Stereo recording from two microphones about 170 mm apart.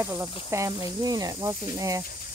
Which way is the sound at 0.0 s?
20° right (ahead or behind).